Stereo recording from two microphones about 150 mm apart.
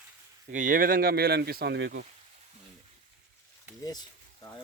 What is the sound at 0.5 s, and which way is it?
Speech, 60° right (ahead or behind).